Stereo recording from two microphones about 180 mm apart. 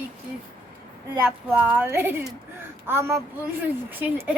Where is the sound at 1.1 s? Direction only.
10° right (ahead or behind).